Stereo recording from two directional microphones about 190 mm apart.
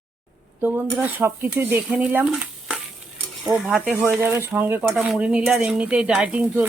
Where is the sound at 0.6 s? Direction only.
10° right (ahead or behind).